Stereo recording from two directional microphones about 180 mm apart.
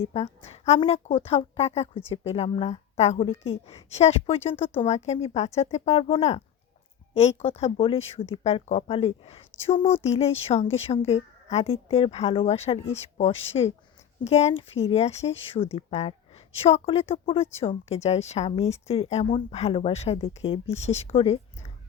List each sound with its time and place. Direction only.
0.0 s a woman's voice: 35° left (ahead or behind)